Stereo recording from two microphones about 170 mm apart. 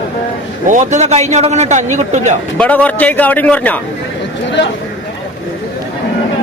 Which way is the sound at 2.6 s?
10° left (ahead or behind).